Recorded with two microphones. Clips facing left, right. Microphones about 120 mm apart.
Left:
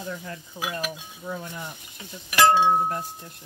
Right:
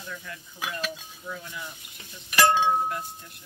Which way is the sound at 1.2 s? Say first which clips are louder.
Left 4 dB; 45° left (ahead or behind).